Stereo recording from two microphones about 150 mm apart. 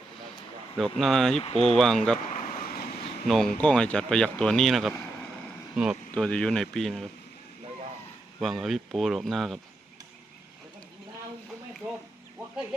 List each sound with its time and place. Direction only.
0.8 s speech: centre (ahead or behind)
1.4 s speech: 45° left (ahead or behind)
1.8 s speech: 5° left (ahead or behind)
2.3 s vehicle: 55° left (ahead or behind)
3.2 s speech: 5° left (ahead or behind)
6.1 s speech: 5° left (ahead or behind)
8.4 s speech: centre (ahead or behind)